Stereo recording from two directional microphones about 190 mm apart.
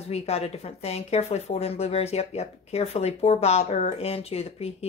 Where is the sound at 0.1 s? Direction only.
35° left (ahead or behind).